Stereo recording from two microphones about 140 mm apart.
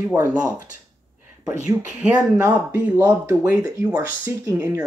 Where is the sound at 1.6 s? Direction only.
5° right (ahead or behind).